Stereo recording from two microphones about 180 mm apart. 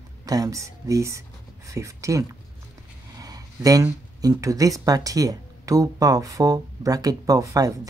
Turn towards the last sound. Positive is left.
turn(degrees=-20)  # may be behind; listen again after turning